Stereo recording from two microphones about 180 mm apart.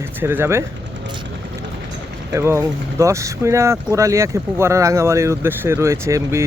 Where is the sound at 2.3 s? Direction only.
15° right (ahead or behind).